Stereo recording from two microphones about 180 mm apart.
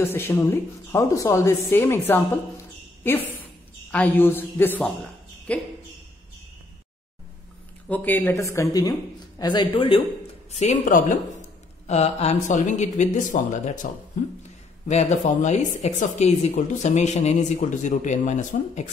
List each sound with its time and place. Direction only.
0.0 s a woman's voice: 10° left (ahead or behind)
7.9 s a woman's voice: 10° left (ahead or behind); by 13.8 s 45° left (ahead or behind)
14.9 s speech: 40° left (ahead or behind)